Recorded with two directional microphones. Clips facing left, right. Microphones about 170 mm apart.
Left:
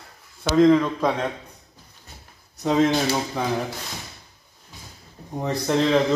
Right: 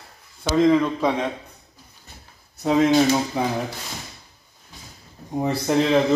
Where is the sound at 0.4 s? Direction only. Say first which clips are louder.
Left 1 dB; 5° right (ahead or behind).